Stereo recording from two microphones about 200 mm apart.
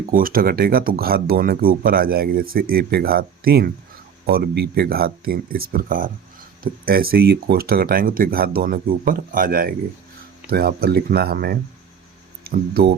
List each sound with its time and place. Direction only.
0.1 s speech: 45° right (ahead or behind)